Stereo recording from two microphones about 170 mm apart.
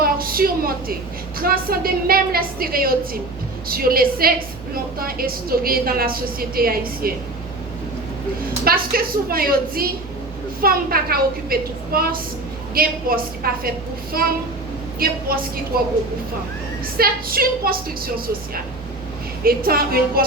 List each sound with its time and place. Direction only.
0.0 s a sound: 60° right (ahead or behind)
1.4 s a woman's voice: 60° right (ahead or behind)
8.6 s a woman's voice: 60° right (ahead or behind)
17.0 s a woman's voice: 60° right (ahead or behind)
19.5 s a woman's voice: 60° right (ahead or behind)